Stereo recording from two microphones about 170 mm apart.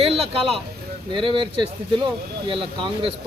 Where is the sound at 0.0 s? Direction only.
35° right (ahead or behind).